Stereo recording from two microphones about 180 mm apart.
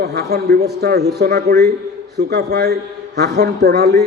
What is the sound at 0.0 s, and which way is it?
A man's voice, 65° right (ahead or behind).